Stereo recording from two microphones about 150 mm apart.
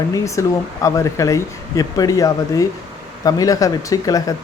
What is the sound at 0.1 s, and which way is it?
Speech, 20° left (ahead or behind).